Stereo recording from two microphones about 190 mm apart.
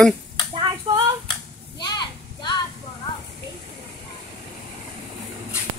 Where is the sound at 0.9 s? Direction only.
25° right (ahead or behind).